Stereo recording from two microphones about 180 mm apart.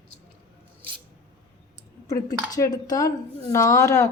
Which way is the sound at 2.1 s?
20° left (ahead or behind).